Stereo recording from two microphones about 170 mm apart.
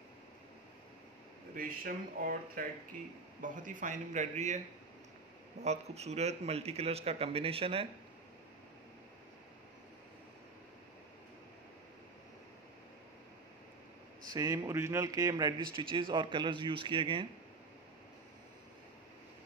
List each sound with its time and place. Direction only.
1.5 s a man's voice: 55° right (ahead or behind)
5.6 s a man's voice: 40° right (ahead or behind)
14.3 s a man's voice: 20° right (ahead or behind)